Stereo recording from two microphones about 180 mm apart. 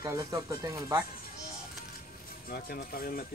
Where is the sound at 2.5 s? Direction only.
55° left (ahead or behind).